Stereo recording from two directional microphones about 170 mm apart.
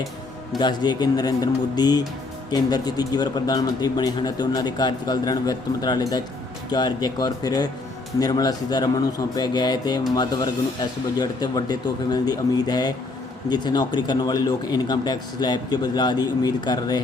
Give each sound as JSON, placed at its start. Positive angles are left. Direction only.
{"t": 0.6, "sound": "speech", "side_deg": 25}